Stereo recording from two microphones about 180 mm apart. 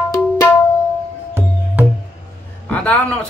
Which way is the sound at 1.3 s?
10° right (ahead or behind).